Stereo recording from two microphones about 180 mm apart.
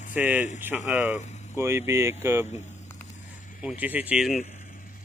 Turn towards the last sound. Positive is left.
turn(degrees=-5)  # may be behind; listen again after turning